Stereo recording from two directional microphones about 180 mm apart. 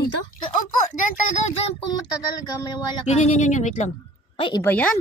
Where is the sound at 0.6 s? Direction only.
45° left (ahead or behind).